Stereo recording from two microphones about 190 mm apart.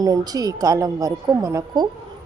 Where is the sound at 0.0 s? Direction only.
20° right (ahead or behind).